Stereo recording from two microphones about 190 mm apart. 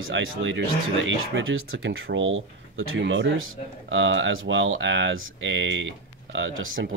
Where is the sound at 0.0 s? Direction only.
90° right.